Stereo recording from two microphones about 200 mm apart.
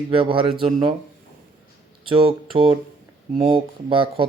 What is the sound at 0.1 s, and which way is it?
Speech, 25° right (ahead or behind).